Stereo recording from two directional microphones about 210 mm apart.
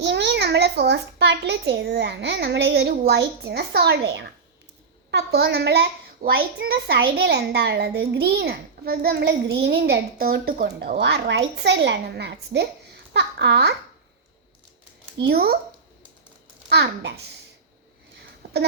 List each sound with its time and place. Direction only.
0.0 s a child's voice: 55° right (ahead or behind)
15.2 s a child's voice: 50° right (ahead or behind)
16.6 s a child's voice: 55° right (ahead or behind)